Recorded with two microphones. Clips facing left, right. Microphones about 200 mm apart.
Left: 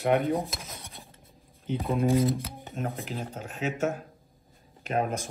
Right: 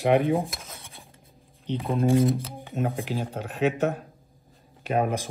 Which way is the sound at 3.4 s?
65° right (ahead or behind).